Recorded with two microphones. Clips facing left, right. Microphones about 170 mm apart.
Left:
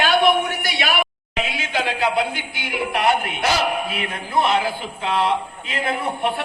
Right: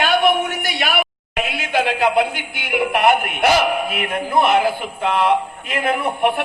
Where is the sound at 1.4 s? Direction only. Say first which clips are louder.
Right 4 dB; 55° right (ahead or behind).